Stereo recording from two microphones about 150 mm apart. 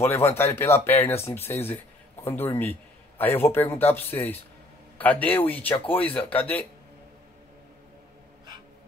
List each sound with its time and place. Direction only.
0.0 s speech: 15° left (ahead or behind)